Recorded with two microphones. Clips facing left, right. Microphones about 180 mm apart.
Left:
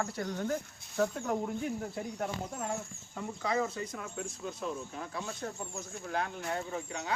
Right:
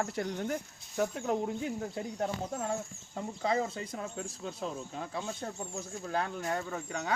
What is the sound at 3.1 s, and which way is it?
Speech, 25° right (ahead or behind).